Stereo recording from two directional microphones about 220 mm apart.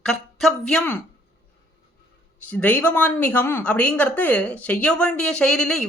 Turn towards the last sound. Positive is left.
turn(degrees=0)  # may be behind; listen again after turning